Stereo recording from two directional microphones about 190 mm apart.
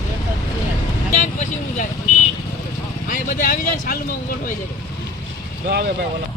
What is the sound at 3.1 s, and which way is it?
Speech, 45° left (ahead or behind).